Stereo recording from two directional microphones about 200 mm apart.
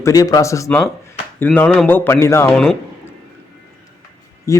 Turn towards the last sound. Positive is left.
turn(degrees=15)  # may be behind; listen again after turning